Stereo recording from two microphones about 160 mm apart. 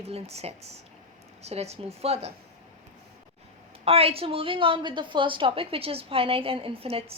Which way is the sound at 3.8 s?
35° right (ahead or behind).